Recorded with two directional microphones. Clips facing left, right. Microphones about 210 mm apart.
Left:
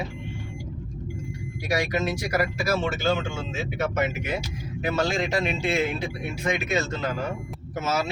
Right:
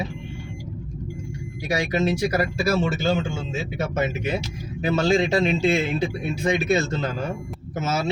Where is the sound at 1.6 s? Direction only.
25° right (ahead or behind).